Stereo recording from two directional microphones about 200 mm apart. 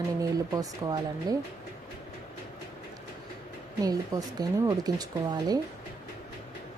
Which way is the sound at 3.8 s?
20° right (ahead or behind).